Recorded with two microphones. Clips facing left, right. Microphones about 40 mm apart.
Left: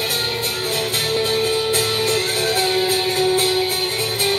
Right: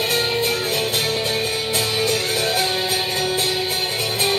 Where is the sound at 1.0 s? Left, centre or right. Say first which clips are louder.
Left 3 dB; left.